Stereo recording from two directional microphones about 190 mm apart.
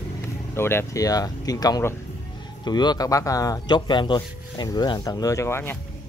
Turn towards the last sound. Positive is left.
turn(degrees=15)  # may be behind; listen again after turning